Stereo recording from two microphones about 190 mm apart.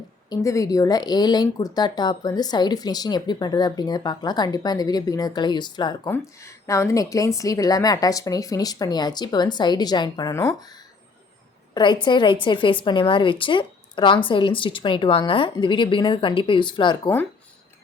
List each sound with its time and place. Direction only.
0.3 s speech: 15° left (ahead or behind)
11.7 s speech: 25° left (ahead or behind)